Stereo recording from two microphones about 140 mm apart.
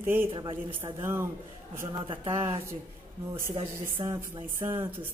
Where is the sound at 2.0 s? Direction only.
35° right (ahead or behind).